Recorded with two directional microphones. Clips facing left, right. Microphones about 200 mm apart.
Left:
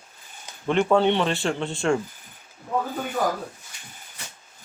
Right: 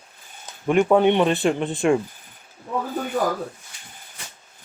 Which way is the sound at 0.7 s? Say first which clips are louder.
Right 3 dB; 15° right (ahead or behind).